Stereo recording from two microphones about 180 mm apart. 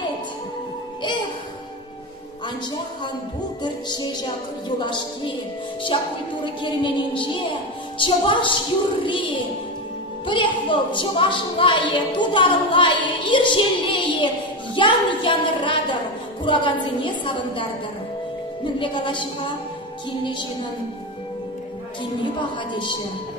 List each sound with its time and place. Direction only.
3.6 s a woman's voice: 25° left (ahead or behind)
10.2 s a woman's voice: 25° left (ahead or behind)
18.8 s a woman's voice: 25° left (ahead or behind)